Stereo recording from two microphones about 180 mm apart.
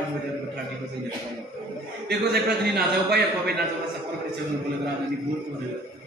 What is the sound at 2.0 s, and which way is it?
A man's voice, 65° right (ahead or behind).